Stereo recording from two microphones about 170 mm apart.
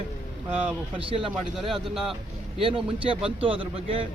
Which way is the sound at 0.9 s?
30° right (ahead or behind).